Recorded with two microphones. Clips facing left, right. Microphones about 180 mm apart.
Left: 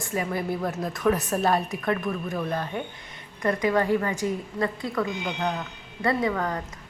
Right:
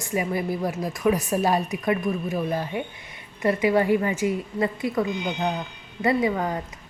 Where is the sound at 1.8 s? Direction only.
15° right (ahead or behind).